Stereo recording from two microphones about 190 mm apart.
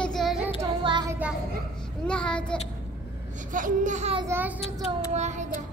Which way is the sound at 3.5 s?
40° right (ahead or behind).